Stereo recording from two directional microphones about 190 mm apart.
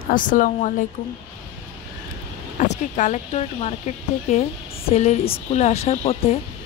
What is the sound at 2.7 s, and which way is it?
Speech, 40° left (ahead or behind).